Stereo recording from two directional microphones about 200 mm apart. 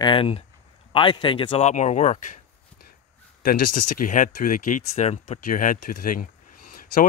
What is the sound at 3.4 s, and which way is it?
Speech, 40° left (ahead or behind).